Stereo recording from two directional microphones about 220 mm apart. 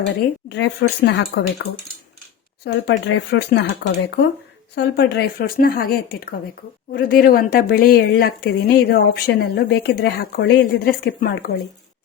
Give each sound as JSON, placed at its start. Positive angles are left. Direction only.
{"t": 0.4, "sound": "speech", "side_deg": 50}
{"t": 2.8, "sound": "speech", "side_deg": 50}